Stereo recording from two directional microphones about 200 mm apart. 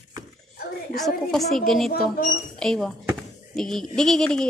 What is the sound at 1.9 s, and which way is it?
Speech, 50° left (ahead or behind).